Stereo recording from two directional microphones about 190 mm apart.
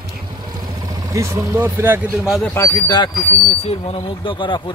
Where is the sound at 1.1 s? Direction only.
15° right (ahead or behind).